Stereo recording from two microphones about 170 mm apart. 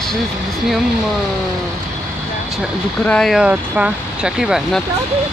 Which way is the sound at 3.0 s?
5° left (ahead or behind).